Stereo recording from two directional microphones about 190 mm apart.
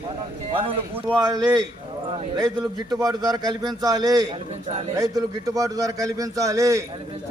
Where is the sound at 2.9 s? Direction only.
20° right (ahead or behind).